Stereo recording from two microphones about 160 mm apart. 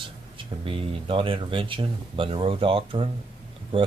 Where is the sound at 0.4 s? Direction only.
35° right (ahead or behind).